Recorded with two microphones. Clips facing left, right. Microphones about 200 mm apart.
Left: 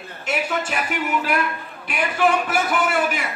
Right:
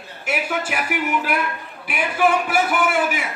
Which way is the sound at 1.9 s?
5° right (ahead or behind).